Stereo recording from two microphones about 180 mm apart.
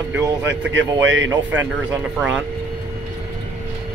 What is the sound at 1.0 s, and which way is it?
Speech, 90° right.